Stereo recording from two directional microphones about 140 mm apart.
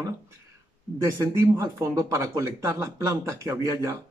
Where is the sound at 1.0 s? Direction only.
20° right (ahead or behind).